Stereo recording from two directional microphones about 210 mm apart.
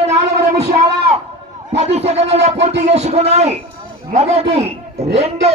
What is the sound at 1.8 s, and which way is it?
A man's voice, 30° right (ahead or behind).